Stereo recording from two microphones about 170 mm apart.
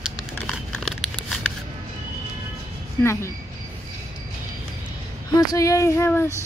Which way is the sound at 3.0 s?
15° left (ahead or behind).